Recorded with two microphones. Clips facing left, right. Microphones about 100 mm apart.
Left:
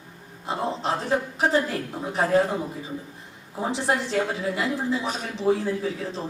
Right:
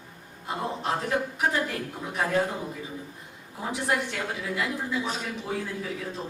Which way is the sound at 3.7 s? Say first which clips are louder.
Left 4 dB; 30° left (ahead or behind).